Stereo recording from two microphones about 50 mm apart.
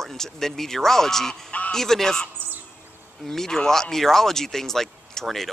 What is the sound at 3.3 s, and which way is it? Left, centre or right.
Speech, centre.